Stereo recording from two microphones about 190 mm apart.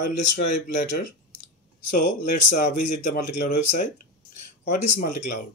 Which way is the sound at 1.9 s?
40° left (ahead or behind).